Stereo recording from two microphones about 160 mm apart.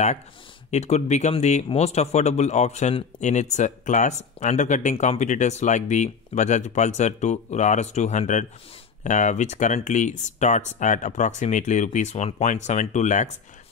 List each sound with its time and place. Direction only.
0.7 s speech: 45° left (ahead or behind)